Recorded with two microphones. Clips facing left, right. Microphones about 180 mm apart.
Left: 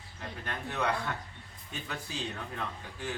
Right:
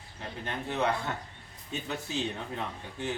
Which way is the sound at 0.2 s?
25° right (ahead or behind).